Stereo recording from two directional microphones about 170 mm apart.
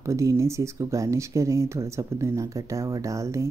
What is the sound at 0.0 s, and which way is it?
Speech, 20° right (ahead or behind).